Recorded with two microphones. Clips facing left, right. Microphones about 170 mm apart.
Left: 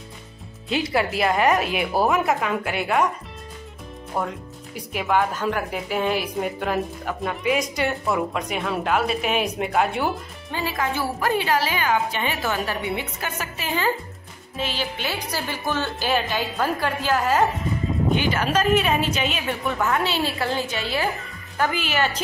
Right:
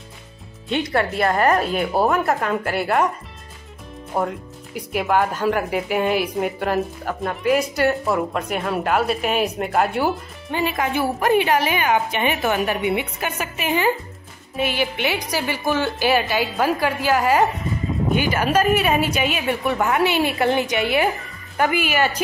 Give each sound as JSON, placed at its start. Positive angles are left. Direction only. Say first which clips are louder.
{"t": 0.9, "sound": "speech", "louder": "right 2 dB", "side_deg": 5}
{"t": 4.1, "sound": "a woman's voice", "louder": "right 4 dB", "side_deg": -10}
{"t": 10.5, "sound": "a woman's voice", "louder": "right 4 dB", "side_deg": -20}